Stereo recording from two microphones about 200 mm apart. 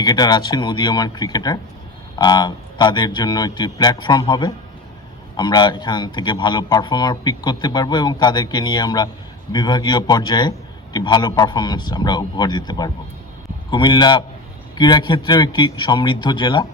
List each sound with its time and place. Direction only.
0.0 s speech: 20° left (ahead or behind)